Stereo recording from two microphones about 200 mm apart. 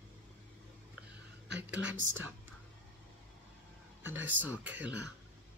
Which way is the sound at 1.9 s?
70° right (ahead or behind).